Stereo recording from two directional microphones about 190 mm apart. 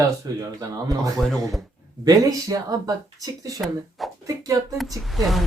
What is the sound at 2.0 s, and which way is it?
Speech, 20° right (ahead or behind).